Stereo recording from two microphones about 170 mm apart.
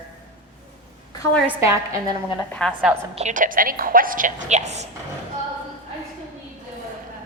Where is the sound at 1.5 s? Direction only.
15° right (ahead or behind).